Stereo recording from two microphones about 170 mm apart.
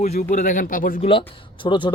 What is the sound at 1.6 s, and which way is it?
Speech, 30° left (ahead or behind).